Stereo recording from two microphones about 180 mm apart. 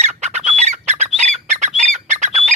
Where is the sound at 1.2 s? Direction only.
40° right (ahead or behind).